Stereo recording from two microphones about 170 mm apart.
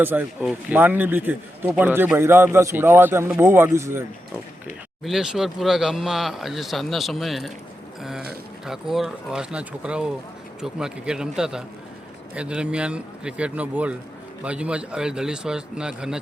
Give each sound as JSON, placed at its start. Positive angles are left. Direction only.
{"t": 0.0, "sound": "speech", "side_deg": -10}
{"t": 5.0, "sound": "speech", "side_deg": -5}
{"t": 8.6, "sound": "speech", "side_deg": 0}